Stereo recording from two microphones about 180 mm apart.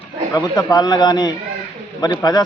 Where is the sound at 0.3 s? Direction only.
20° left (ahead or behind).